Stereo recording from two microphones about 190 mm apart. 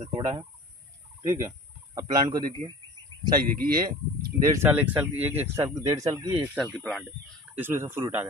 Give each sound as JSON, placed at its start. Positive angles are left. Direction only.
{"t": 0.1, "sound": "fowl", "side_deg": -25}
{"t": 3.5, "sound": "speech", "side_deg": -50}
{"t": 4.5, "sound": "speech", "side_deg": -10}
{"t": 6.5, "sound": "speech", "side_deg": 0}
{"t": 7.5, "sound": "speech", "side_deg": -10}